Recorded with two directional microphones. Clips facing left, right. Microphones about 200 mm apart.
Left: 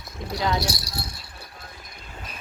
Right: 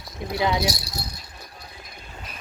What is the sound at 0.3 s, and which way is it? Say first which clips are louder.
Speech: right 2 dB; 20° right (ahead or behind).